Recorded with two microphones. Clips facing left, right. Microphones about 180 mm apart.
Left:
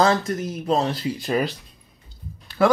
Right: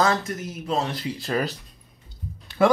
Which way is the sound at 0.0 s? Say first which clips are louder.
Left 3 dB; 30° left (ahead or behind).